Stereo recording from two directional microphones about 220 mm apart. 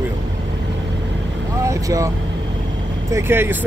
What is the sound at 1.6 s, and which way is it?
Speech, 15° right (ahead or behind).